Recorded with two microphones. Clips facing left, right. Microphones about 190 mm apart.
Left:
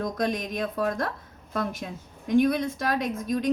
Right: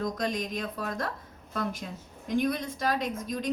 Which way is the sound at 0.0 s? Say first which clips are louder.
Left 3 dB; 55° left (ahead or behind).